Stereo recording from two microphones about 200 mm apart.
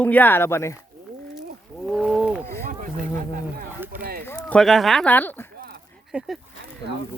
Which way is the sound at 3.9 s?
50° right (ahead or behind).